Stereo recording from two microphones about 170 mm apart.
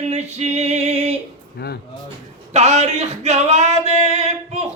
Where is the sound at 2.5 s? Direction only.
40° right (ahead or behind).